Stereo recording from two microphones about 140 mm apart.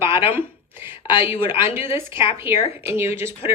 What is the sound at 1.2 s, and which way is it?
A woman's voice, 15° right (ahead or behind).